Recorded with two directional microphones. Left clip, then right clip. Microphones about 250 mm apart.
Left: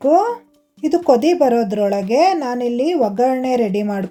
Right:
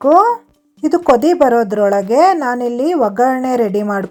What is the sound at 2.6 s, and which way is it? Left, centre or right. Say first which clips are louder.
Speech: right 2 dB; right.